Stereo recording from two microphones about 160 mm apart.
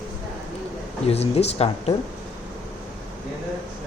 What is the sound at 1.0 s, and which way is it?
Speech, 40° left (ahead or behind).